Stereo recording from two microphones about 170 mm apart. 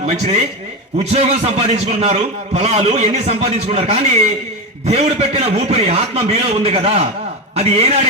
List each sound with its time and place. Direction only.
0.0 s a man's voice: 40° right (ahead or behind)